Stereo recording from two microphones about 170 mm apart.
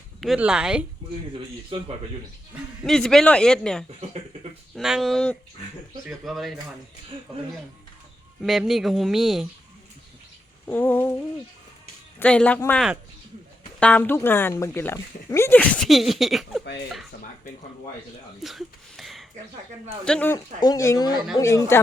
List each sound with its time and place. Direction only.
0.2 s speech: 5° right (ahead or behind)
2.8 s speech: 5° left (ahead or behind)
8.4 s speech: centre (ahead or behind)
10.7 s speech: 10° left (ahead or behind)
12.2 s speech: 5° left (ahead or behind)
18.4 s a sound: centre (ahead or behind)
20.1 s speech: 10° left (ahead or behind)
20.6 s speech: 20° left (ahead or behind)